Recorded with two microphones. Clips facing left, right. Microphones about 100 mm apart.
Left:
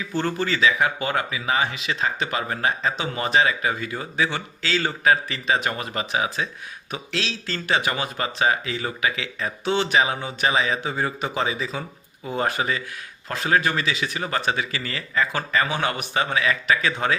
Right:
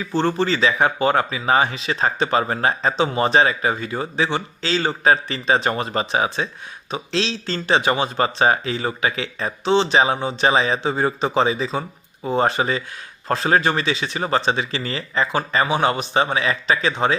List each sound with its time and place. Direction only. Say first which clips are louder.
0.1 s speech: right 5 dB; 30° right (ahead or behind)